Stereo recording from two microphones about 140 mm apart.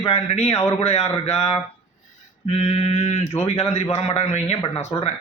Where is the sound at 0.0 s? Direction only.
50° left (ahead or behind).